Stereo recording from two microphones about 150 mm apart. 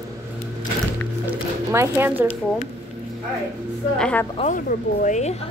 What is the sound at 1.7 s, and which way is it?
Speech, 15° right (ahead or behind).